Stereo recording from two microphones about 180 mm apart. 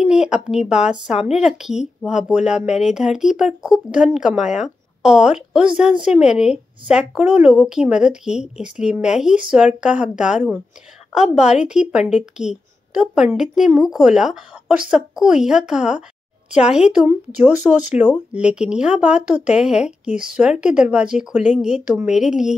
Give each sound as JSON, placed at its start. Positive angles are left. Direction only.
{"t": 0.0, "sound": "a woman's voice", "side_deg": -5}
{"t": 17.9, "sound": "speech", "side_deg": 40}
{"t": 18.3, "sound": "a woman's voice", "side_deg": -5}